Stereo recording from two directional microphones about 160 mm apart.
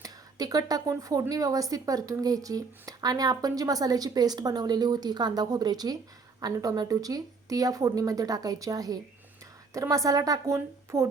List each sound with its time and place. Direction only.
0.0 s a woman's voice: 25° right (ahead or behind)